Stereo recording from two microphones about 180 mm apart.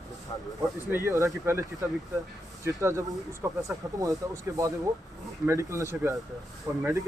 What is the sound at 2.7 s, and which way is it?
Speech, 15° right (ahead or behind).